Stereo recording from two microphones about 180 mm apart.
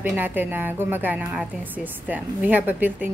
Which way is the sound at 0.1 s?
10° right (ahead or behind).